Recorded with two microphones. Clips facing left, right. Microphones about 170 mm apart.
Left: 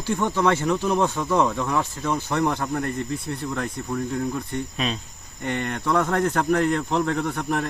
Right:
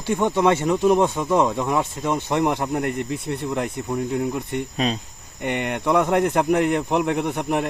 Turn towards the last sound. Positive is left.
turn(degrees=-20)  # may be behind; listen again after turning